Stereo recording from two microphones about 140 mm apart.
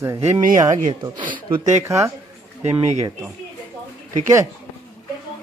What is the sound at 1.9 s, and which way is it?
Speech, 20° right (ahead or behind).